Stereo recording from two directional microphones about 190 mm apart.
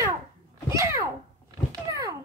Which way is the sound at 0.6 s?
15° right (ahead or behind).